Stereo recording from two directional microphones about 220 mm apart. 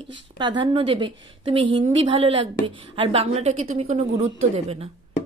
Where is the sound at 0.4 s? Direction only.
20° right (ahead or behind).